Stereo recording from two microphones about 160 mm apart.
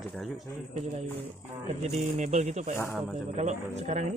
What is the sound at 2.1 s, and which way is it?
Speech, 45° right (ahead or behind).